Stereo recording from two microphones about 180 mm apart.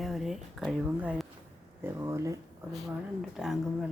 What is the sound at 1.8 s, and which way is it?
Speech, 15° right (ahead or behind).